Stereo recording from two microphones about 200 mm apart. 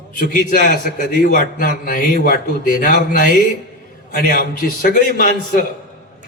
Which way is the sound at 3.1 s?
40° left (ahead or behind).